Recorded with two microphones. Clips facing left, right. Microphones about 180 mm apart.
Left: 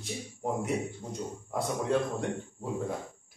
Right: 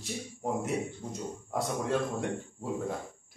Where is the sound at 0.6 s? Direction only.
Centre (ahead or behind).